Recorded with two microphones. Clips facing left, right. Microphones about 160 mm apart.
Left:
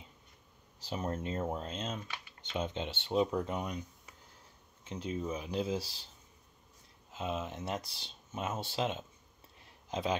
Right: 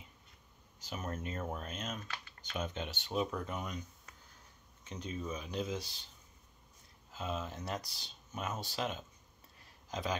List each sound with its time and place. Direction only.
0.7 s speech: 30° left (ahead or behind)
7.1 s a man's voice: 20° left (ahead or behind)